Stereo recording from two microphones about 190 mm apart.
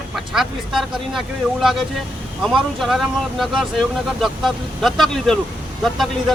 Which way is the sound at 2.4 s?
Centre (ahead or behind).